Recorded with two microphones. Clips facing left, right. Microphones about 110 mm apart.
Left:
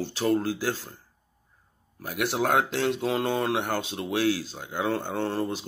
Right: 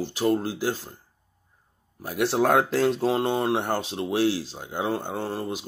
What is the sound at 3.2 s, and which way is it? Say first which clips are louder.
Speech: right 2 dB; 25° right (ahead or behind).